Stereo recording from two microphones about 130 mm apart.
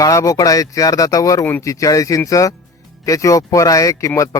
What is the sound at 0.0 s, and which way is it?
Speech, 25° left (ahead or behind).